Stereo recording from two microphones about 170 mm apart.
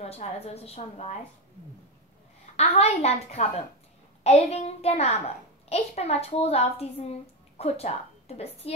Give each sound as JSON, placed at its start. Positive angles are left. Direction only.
{"t": 0.0, "sound": "a child's voice", "side_deg": 40}
{"t": 2.5, "sound": "a child's voice", "side_deg": 40}